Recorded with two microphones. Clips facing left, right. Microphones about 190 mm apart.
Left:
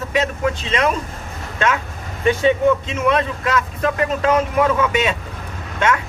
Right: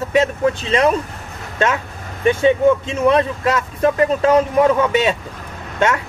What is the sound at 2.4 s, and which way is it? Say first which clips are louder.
Speech: right 3 dB; 35° right (ahead or behind).